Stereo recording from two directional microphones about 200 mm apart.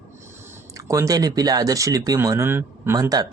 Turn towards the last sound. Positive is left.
turn(degrees=-20)  # may be behind; listen again after turning